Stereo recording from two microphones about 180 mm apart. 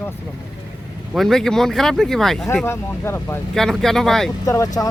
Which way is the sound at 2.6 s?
15° left (ahead or behind).